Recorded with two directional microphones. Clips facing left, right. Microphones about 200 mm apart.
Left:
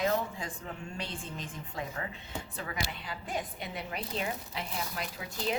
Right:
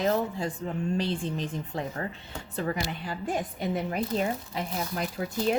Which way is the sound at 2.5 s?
40° right (ahead or behind).